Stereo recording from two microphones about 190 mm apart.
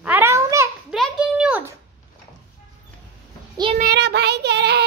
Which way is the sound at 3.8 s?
60° right (ahead or behind).